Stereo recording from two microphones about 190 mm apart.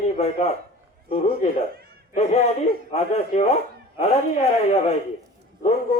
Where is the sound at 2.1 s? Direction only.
35° left (ahead or behind).